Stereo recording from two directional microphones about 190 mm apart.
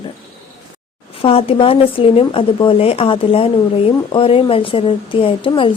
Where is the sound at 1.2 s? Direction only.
30° left (ahead or behind).